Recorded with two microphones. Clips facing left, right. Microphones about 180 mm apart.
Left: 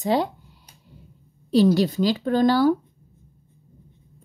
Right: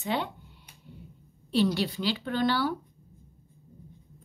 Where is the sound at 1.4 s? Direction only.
40° left (ahead or behind).